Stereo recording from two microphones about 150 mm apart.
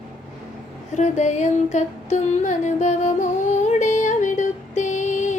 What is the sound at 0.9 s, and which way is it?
Music, 50° left (ahead or behind).